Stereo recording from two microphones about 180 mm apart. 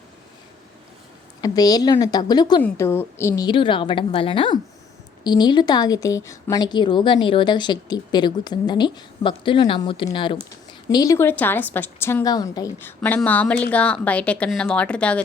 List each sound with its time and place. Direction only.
1.4 s a woman's voice: 20° left (ahead or behind)
13.0 s speech: 10° left (ahead or behind)